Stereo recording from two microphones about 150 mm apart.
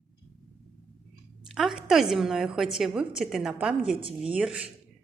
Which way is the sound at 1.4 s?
Centre (ahead or behind).